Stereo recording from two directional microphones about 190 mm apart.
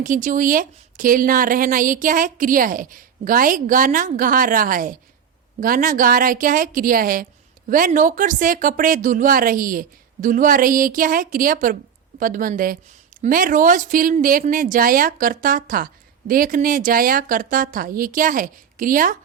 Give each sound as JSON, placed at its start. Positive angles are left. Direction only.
{"t": 0.0, "sound": "speech", "side_deg": -45}